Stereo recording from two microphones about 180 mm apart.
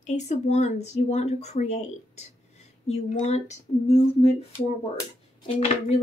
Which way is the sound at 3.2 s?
40° left (ahead or behind).